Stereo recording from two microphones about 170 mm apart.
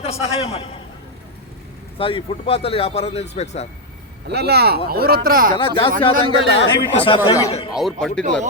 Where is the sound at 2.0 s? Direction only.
30° left (ahead or behind).